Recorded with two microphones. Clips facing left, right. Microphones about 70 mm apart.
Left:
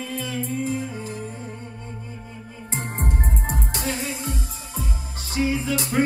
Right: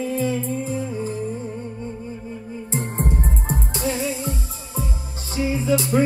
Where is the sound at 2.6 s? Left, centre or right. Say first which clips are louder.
Right 4 dB; left.